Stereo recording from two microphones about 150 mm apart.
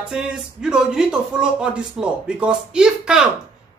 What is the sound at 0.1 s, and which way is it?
A man's voice, 5° right (ahead or behind).